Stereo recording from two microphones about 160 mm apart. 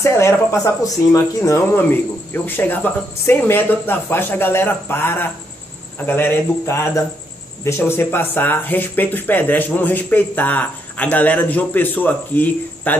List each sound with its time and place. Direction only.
0.0 s speech: 15° left (ahead or behind)